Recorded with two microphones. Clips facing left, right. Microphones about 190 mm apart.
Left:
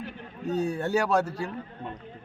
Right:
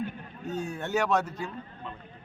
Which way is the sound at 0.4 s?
35° left (ahead or behind).